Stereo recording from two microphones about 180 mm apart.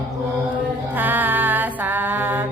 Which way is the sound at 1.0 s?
10° right (ahead or behind).